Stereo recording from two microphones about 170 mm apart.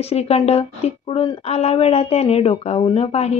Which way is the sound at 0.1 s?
35° left (ahead or behind).